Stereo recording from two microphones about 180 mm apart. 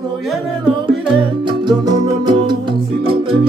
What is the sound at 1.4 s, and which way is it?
Music, 25° right (ahead or behind).